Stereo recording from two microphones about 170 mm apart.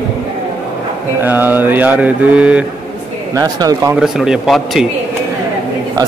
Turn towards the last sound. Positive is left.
turn(degrees=0)  # may be behind; listen again after turning